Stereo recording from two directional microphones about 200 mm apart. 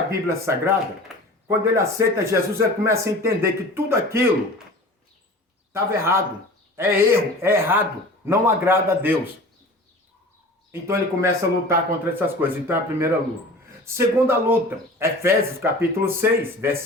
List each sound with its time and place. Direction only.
0.1 s speech: 15° right (ahead or behind)
5.7 s speech: 15° right (ahead or behind)
10.7 s speech: 15° right (ahead or behind)